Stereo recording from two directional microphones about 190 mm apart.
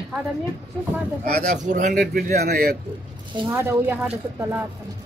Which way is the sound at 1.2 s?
40° right (ahead or behind).